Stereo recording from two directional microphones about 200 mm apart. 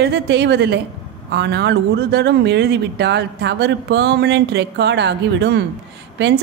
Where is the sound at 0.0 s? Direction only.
60° right (ahead or behind).